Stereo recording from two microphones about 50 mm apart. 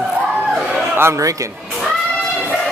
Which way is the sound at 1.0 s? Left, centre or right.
Right.